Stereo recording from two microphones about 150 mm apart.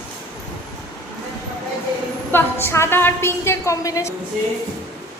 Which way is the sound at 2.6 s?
15° left (ahead or behind).